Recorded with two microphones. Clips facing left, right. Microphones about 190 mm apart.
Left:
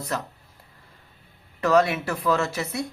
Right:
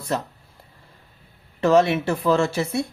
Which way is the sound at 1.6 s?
25° right (ahead or behind).